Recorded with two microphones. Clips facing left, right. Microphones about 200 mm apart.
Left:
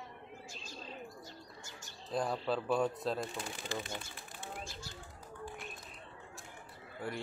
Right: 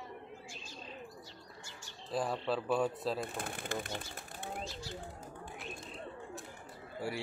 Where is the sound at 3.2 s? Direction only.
55° right (ahead or behind).